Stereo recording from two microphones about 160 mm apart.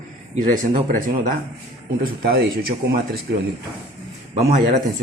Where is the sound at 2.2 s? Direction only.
70° right (ahead or behind).